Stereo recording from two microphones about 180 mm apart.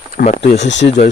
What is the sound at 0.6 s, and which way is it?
Speech, 80° left.